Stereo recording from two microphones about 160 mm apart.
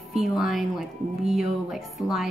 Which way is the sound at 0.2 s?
Centre (ahead or behind).